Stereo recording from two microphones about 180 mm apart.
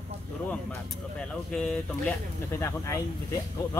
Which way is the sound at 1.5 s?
5° left (ahead or behind).